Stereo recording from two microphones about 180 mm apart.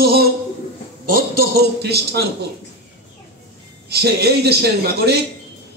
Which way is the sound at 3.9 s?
60° right (ahead or behind).